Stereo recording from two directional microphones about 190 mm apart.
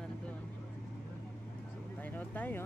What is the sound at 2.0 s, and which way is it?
Speech, 10° left (ahead or behind).